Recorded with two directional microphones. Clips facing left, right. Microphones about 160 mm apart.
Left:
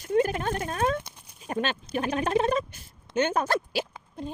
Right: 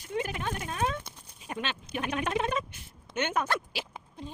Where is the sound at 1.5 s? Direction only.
40° left (ahead or behind).